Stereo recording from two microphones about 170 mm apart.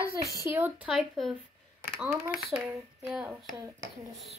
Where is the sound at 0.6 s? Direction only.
10° right (ahead or behind).